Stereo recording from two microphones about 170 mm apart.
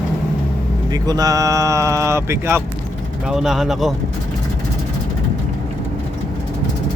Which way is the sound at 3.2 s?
5° right (ahead or behind).